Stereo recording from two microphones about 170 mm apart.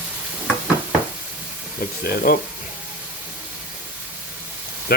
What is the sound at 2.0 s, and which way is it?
Speech, 60° left (ahead or behind).